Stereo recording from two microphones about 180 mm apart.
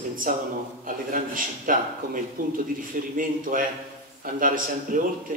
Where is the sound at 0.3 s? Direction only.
50° right (ahead or behind).